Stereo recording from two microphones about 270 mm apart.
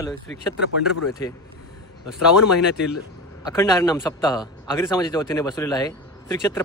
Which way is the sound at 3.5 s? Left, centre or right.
Centre.